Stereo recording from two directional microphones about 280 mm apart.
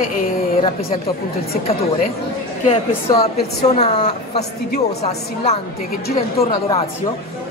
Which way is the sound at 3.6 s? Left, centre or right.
Left.